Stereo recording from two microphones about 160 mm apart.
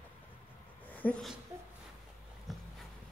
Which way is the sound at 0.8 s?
10° left (ahead or behind).